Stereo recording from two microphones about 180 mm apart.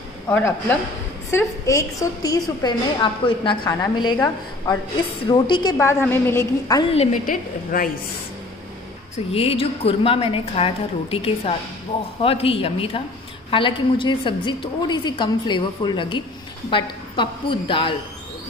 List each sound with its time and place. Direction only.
0.3 s a woman's voice: 10° left (ahead or behind)
7.2 s a woman's voice: 50° left (ahead or behind)
9.3 s a woman's voice: 30° left (ahead or behind)